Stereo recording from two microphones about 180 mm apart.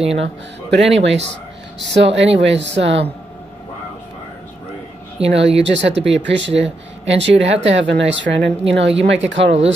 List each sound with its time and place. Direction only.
0.1 s a woman's voice: 85° right
5.2 s a woman's voice: 90° right